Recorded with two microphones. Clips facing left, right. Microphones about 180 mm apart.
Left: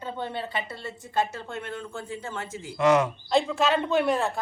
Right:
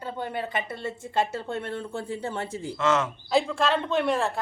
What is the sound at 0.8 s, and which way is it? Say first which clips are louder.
Speech: right 1 dB; 25° right (ahead or behind).